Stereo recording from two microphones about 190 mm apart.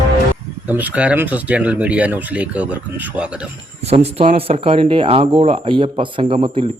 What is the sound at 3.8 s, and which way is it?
Speech, 35° right (ahead or behind).